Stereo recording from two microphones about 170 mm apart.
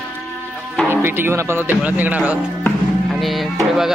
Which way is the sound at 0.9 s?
15° right (ahead or behind).